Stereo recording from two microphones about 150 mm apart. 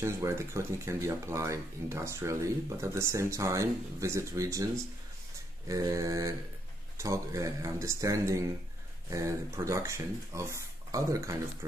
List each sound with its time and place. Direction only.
0.0 s speech: 20° right (ahead or behind)
5.7 s speech: 20° right (ahead or behind)